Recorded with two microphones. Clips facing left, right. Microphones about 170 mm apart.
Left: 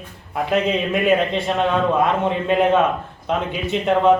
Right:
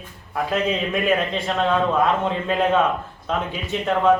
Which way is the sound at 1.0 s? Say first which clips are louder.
Left 4 dB; 20° left (ahead or behind).